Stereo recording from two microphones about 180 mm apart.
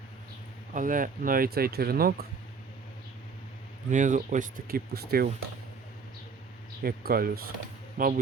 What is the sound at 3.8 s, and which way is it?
Speech, 45° right (ahead or behind).